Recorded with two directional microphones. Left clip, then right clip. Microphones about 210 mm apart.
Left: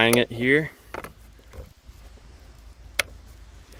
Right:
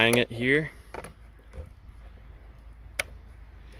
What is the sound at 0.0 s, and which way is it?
Speech, 15° left (ahead or behind).